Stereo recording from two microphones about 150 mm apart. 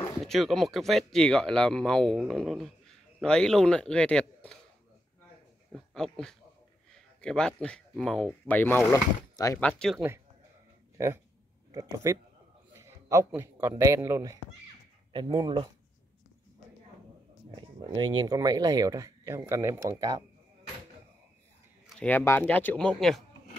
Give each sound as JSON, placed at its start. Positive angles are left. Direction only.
{"t": 0.2, "sound": "speech", "side_deg": 0}
{"t": 5.7, "sound": "speech", "side_deg": 0}
{"t": 9.6, "sound": "speech", "side_deg": 5}
{"t": 11.0, "sound": "speech", "side_deg": -25}
{"t": 12.7, "sound": "a sound", "side_deg": -20}
{"t": 13.3, "sound": "speech", "side_deg": -15}
{"t": 15.1, "sound": "speech", "side_deg": -30}
{"t": 17.6, "sound": "speech", "side_deg": -30}
{"t": 22.0, "sound": "speech", "side_deg": 15}